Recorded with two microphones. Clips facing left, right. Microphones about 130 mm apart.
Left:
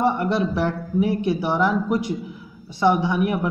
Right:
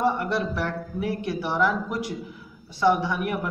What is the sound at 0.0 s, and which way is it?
Speech, 20° left (ahead or behind).